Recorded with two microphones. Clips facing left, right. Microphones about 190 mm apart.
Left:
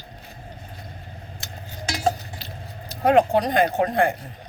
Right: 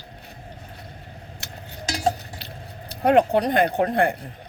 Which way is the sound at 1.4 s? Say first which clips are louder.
Even; 65° right (ahead or behind).